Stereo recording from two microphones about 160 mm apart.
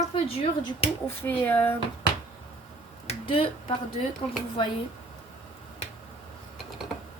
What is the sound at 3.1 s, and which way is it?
Speech, 35° left (ahead or behind).